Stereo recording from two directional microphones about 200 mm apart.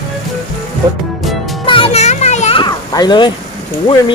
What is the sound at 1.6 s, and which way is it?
Children playing, 25° left (ahead or behind).